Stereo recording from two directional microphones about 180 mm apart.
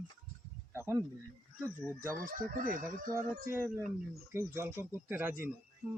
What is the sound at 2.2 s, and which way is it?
Speech, 50° right (ahead or behind).